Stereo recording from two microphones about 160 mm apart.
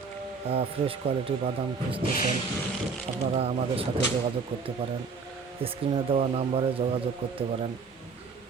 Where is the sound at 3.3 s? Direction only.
35° right (ahead or behind).